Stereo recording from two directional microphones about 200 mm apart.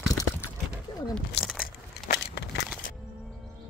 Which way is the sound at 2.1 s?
60° left (ahead or behind).